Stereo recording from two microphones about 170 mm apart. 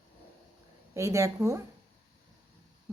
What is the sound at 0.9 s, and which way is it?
Speech, 20° right (ahead or behind).